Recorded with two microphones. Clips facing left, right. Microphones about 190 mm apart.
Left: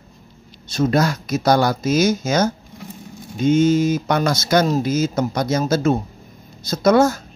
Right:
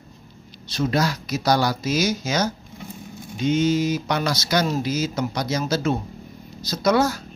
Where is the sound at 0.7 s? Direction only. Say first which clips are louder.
Left 4 dB; 45° left (ahead or behind).